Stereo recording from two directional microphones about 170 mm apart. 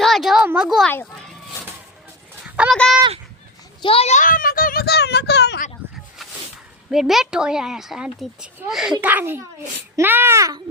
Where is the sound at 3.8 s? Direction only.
35° left (ahead or behind); by 5.6 s 80° left.